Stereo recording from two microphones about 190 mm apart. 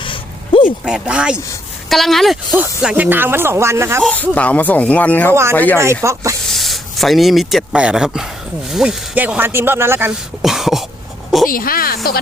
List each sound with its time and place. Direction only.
0.0 s a sound: 25° left (ahead or behind)
0.9 s speech: 5° right (ahead or behind)
4.0 s speech: 10° left (ahead or behind)
5.8 s speech: 15° right (ahead or behind)
6.5 s speech: centre (ahead or behind)
10.4 s speech: centre (ahead or behind)
11.4 s a woman's voice: 50° left (ahead or behind)